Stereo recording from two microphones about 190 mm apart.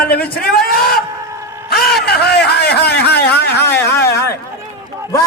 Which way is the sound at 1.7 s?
55° left (ahead or behind).